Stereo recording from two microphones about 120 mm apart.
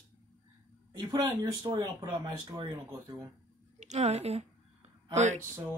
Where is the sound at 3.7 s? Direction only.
70° right (ahead or behind).